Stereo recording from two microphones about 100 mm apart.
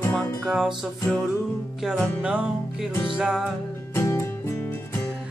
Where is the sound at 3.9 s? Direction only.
25° left (ahead or behind).